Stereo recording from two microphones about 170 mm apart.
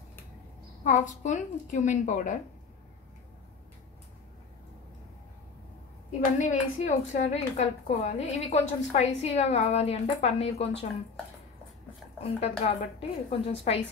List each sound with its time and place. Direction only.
0.8 s a woman's voice: 45° left (ahead or behind)
6.3 s a woman's voice: 45° left (ahead or behind)
12.2 s a woman's voice: 35° left (ahead or behind)